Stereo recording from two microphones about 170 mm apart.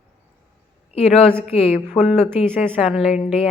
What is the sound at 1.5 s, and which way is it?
Speech, 35° left (ahead or behind).